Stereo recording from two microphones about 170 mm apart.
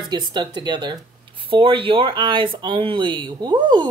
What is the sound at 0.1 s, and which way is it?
Speech, 25° right (ahead or behind).